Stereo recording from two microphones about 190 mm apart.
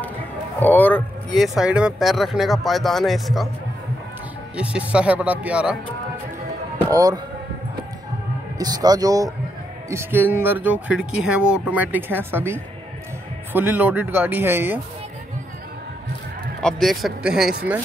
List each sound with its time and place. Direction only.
0.6 s speech: 10° left (ahead or behind)
4.6 s speech: 5° right (ahead or behind)
6.9 s speech: 20° right (ahead or behind)
8.5 s speech: 20° right (ahead or behind)
16.6 s speech: centre (ahead or behind)